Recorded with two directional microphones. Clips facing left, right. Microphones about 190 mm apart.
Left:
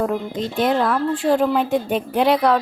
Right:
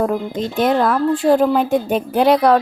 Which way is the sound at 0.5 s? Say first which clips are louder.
Right 3 dB; 45° right (ahead or behind).